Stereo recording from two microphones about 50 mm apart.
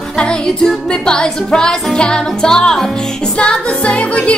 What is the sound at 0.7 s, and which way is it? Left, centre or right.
Music, centre.